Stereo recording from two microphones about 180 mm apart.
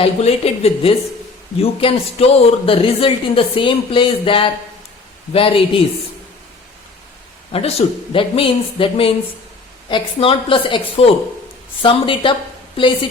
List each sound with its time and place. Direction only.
0.0 s a woman's voice: 35° left (ahead or behind)
7.5 s a woman's voice: 35° left (ahead or behind)